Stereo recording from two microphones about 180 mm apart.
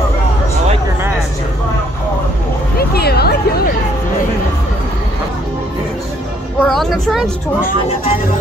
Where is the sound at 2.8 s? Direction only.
60° left (ahead or behind).